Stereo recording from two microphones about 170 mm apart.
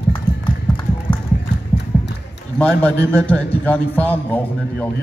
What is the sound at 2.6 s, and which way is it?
A man's voice, 5° left (ahead or behind).